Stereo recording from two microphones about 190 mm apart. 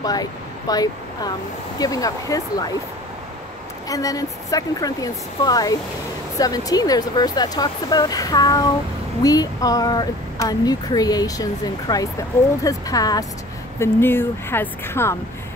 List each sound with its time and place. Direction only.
0.0 s speech: 20° left (ahead or behind)
3.9 s speech: 20° left (ahead or behind)